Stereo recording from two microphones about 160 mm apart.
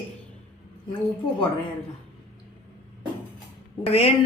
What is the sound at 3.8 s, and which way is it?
Speech, 40° left (ahead or behind).